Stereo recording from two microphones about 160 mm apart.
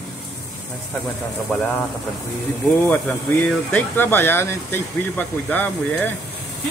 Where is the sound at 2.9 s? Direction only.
10° left (ahead or behind).